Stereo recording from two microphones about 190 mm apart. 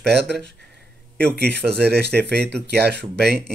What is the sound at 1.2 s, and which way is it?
Speech, 60° right (ahead or behind).